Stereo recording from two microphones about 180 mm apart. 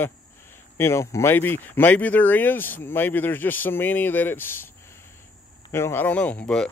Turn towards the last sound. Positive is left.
turn(degrees=5)  # may be behind; listen again after turning